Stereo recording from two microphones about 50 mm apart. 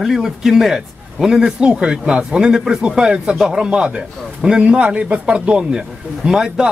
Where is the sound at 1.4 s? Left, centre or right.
Right.